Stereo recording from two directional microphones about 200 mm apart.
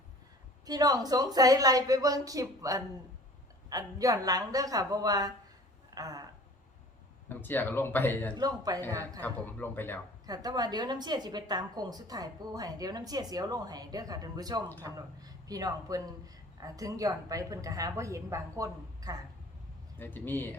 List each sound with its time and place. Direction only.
0.6 s a man's voice: 20° right (ahead or behind)
7.3 s speech: 10° left (ahead or behind)
8.4 s a woman's voice: 20° right (ahead or behind)
9.2 s speech: 10° left (ahead or behind)
10.2 s a woman's voice: 20° right (ahead or behind)
20.0 s speech: 10° left (ahead or behind)